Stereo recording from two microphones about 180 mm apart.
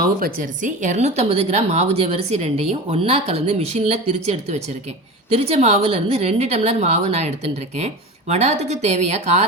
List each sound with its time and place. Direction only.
0.0 s speech: 50° right (ahead or behind)